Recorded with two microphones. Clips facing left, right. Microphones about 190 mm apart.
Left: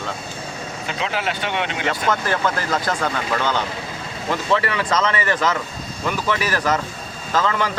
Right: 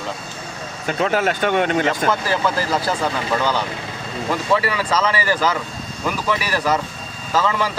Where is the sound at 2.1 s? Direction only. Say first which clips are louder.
Right 1 dB; 10° right (ahead or behind).